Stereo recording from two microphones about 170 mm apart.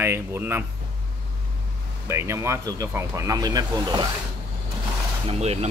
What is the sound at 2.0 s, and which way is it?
Speech, 15° right (ahead or behind).